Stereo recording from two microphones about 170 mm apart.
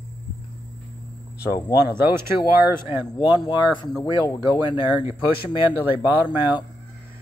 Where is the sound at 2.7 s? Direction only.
10° right (ahead or behind).